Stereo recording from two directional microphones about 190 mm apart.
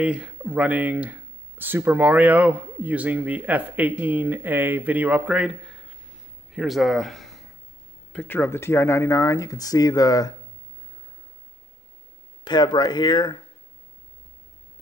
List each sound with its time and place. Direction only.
0.0 s speech: 5° right (ahead or behind); by 10.3 s 20° left (ahead or behind)
12.4 s speech: 25° left (ahead or behind)